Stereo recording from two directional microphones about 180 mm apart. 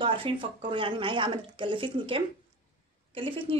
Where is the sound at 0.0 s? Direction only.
30° right (ahead or behind).